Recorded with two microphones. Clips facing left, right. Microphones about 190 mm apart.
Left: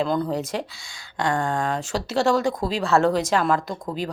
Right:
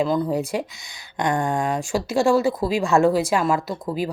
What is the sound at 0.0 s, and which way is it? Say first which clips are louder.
Speech: right 2 dB; 5° right (ahead or behind).